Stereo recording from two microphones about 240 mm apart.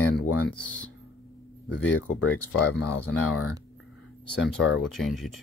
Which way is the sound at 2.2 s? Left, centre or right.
Left.